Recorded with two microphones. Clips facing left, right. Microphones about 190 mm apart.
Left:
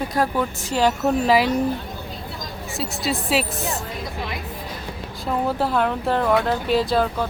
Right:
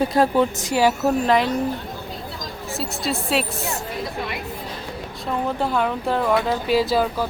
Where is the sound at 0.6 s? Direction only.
10° right (ahead or behind).